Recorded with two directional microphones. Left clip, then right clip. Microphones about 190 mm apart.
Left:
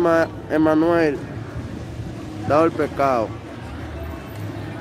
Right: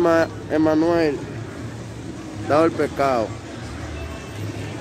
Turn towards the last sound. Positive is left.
turn(degrees=0)  # may be behind; listen again after turning